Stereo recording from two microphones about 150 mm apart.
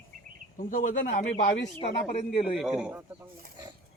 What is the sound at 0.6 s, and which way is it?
Speech, 65° left (ahead or behind).